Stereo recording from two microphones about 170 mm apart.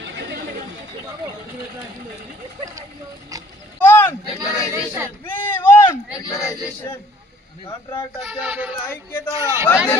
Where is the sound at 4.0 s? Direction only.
15° left (ahead or behind).